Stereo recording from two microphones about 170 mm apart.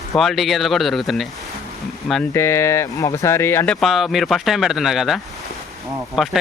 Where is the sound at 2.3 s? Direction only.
15° left (ahead or behind).